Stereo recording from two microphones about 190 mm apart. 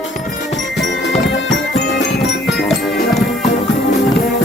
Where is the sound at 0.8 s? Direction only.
65° left (ahead or behind).